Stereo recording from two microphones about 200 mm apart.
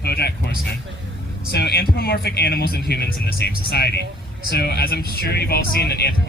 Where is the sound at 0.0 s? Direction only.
55° left (ahead or behind).